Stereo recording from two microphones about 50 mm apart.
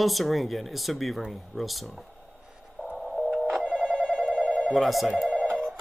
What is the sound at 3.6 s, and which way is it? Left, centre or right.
Telephone bell ringing, centre.